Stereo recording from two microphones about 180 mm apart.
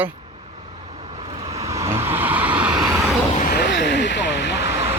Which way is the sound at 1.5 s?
15° right (ahead or behind).